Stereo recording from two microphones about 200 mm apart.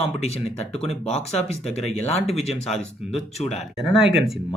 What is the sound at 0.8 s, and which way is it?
Speech, 30° left (ahead or behind).